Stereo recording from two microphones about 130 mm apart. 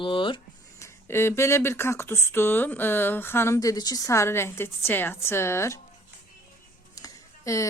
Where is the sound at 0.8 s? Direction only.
20° left (ahead or behind).